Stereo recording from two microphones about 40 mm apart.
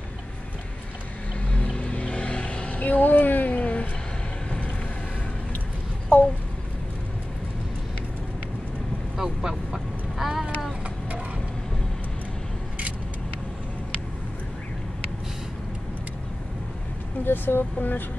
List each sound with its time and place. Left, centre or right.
1.5 s vehicle: left
2.8 s a sound: left
6.1 s a sound: left
9.1 s vehicle: centre
17.2 s vehicle: left
17.7 s speech: left